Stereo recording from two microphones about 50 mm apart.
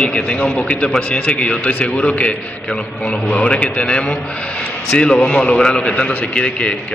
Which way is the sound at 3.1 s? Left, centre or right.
Left.